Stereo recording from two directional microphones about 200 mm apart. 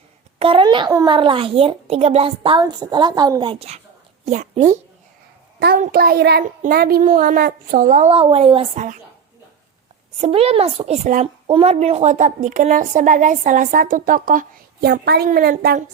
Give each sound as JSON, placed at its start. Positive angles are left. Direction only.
{"t": 0.3, "sound": "a child's voice", "side_deg": -25}
{"t": 5.5, "sound": "a child's voice", "side_deg": -55}
{"t": 8.1, "sound": "a woman's voice", "side_deg": -30}
{"t": 10.2, "sound": "a woman's voice", "side_deg": -30}